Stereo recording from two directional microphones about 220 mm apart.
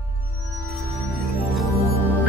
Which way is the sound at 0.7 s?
Centre (ahead or behind).